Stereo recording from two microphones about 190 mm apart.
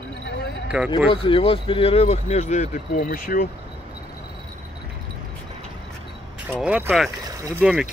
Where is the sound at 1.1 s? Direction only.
25° left (ahead or behind); by 3.5 s 50° left (ahead or behind).